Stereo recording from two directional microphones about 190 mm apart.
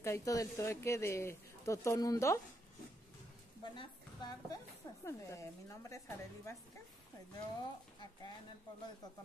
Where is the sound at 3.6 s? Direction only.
25° left (ahead or behind).